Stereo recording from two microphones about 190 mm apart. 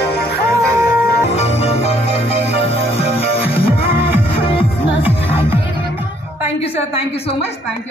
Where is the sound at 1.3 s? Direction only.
35° left (ahead or behind).